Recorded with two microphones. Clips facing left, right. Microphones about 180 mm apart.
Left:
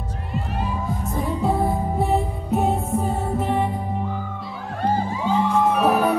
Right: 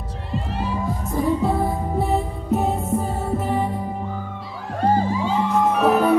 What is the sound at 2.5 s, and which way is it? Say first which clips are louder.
Music: even; centre (ahead or behind).